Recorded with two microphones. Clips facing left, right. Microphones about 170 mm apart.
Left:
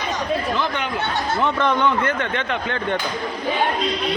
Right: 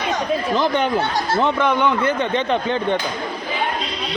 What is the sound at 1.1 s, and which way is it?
Speech, 20° right (ahead or behind).